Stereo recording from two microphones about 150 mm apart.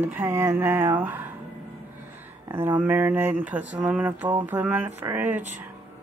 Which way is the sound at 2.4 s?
15° right (ahead or behind).